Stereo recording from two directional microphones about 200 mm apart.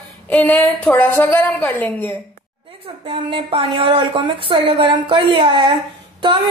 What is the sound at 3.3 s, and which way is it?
Speech, 25° right (ahead or behind).